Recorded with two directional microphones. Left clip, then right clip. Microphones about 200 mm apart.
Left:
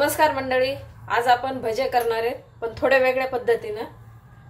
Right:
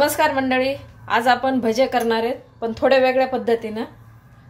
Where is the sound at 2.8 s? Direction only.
25° right (ahead or behind); by 3.9 s 40° right (ahead or behind).